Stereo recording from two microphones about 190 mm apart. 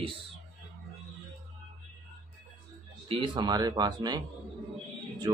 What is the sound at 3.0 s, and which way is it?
Speech, 25° right (ahead or behind).